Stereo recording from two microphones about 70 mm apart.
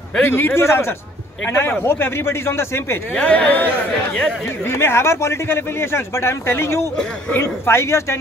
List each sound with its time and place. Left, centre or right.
0.2 s speech: left
3.2 s speech: centre
4.6 s speech: left